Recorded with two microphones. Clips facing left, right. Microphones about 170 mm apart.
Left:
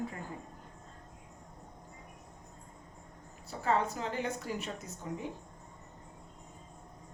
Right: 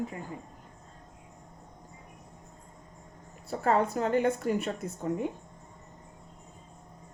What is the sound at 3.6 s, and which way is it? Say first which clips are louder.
A woman's voice: right 5 dB; 50° right (ahead or behind).